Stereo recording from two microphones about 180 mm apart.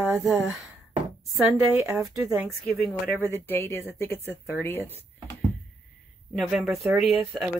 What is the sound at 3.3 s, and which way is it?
Speech, 10° left (ahead or behind).